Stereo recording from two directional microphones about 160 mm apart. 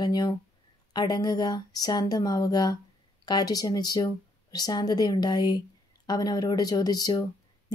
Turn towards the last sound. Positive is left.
turn(degrees=25)  # may be behind; listen again after turning